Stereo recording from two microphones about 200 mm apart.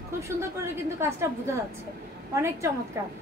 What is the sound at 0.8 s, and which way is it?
Speech, 15° right (ahead or behind).